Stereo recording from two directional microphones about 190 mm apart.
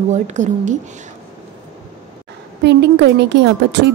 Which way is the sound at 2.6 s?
60° right (ahead or behind).